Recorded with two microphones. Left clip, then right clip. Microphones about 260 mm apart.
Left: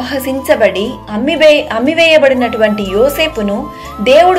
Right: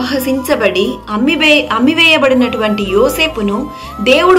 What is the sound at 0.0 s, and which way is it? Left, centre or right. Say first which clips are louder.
A woman's voice: right 1 dB; centre.